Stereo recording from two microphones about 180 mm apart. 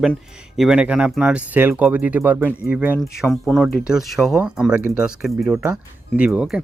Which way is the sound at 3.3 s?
Centre (ahead or behind).